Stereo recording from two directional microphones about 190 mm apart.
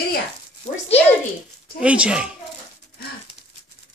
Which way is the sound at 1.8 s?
5° right (ahead or behind).